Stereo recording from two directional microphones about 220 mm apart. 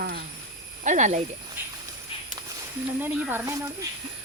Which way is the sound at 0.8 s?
35° right (ahead or behind).